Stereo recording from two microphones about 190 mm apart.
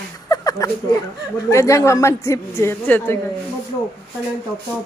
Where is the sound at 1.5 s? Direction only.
15° left (ahead or behind).